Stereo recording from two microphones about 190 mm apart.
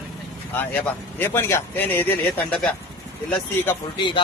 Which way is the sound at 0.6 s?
10° left (ahead or behind).